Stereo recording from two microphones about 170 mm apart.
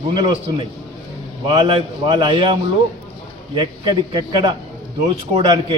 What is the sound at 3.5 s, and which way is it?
A man's voice, 30° right (ahead or behind).